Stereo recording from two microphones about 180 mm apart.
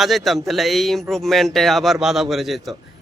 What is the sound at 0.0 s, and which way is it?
Speech, centre (ahead or behind).